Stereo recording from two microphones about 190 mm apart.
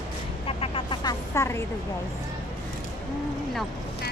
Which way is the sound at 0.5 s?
30° left (ahead or behind).